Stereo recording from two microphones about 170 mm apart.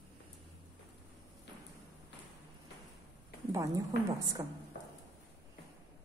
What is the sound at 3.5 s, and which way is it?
Speech, 20° right (ahead or behind).